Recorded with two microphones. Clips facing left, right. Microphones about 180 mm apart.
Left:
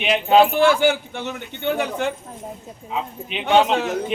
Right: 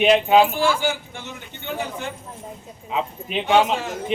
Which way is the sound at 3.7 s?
65° left (ahead or behind).